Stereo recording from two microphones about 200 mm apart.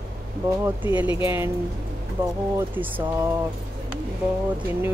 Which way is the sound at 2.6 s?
10° right (ahead or behind).